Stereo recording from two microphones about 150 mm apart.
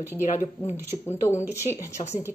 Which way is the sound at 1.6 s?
20° left (ahead or behind).